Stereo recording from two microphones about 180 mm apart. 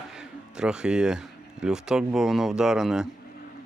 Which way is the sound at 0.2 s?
5° right (ahead or behind).